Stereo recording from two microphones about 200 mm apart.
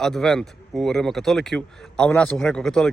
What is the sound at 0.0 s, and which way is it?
Speech, centre (ahead or behind).